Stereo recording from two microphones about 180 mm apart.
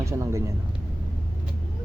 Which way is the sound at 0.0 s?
15° right (ahead or behind).